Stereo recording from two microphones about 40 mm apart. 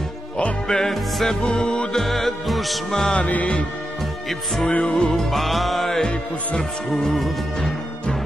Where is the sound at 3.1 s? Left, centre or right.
Left.